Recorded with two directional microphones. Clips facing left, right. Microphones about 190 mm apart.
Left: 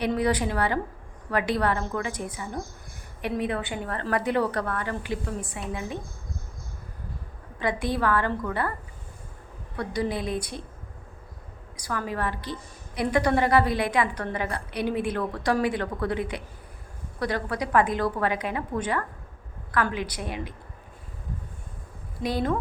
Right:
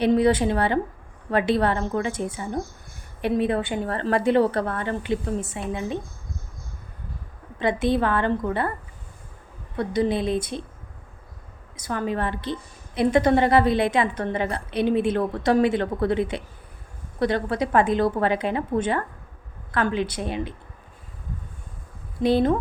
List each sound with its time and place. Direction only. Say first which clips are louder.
0.0 s a woman's voice: right 6 dB; 25° right (ahead or behind)
7.6 s a woman's voice: right 4 dB; 25° right (ahead or behind)
9.7 s a woman's voice: right 5 dB; 25° right (ahead or behind)
11.8 s a woman's voice: right 4 dB; 25° right (ahead or behind)
22.2 s a woman's voice: right 7 dB; 25° right (ahead or behind)